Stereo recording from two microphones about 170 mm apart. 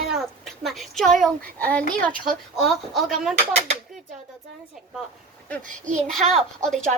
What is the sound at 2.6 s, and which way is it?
Speech, centre (ahead or behind).